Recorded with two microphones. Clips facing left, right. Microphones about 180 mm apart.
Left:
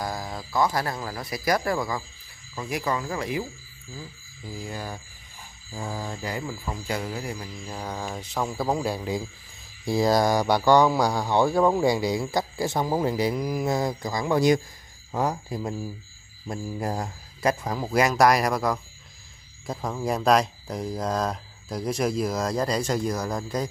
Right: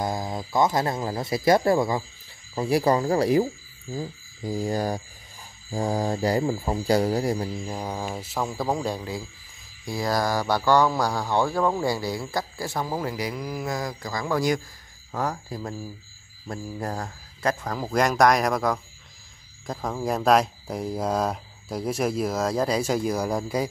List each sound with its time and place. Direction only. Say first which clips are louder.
0.0 s speech: right 4 dB; 20° right (ahead or behind)
7.6 s speech: right 2 dB; 10° right (ahead or behind); by 9.0 s 5° left (ahead or behind)
9.8 s speech: left 4 dB; 25° left (ahead or behind); by 23.7 s 10° right (ahead or behind)